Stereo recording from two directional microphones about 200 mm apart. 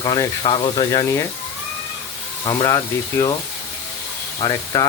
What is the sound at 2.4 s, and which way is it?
Speech, 20° left (ahead or behind).